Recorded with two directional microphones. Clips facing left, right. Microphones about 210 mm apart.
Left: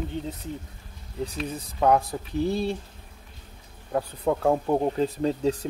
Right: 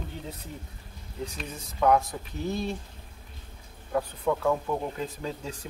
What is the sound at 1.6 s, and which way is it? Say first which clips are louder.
Speech: left 1 dB; 30° left (ahead or behind).